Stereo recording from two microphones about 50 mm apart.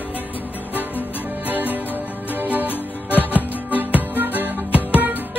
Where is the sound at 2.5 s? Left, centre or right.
Right.